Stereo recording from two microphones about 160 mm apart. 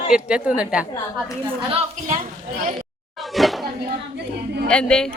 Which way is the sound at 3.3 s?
Centre (ahead or behind).